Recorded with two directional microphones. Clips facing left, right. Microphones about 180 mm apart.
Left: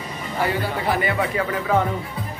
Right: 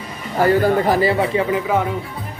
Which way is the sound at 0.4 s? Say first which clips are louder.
Right 9 dB; 45° right (ahead or behind).